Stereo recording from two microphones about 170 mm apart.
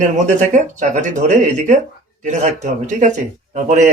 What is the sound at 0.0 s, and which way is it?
Speech, 45° right (ahead or behind).